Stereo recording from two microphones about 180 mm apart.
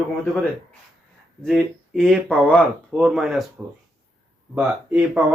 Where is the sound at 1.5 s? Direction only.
Centre (ahead or behind).